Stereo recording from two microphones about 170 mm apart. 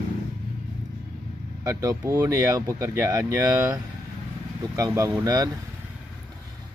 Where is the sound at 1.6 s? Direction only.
20° right (ahead or behind).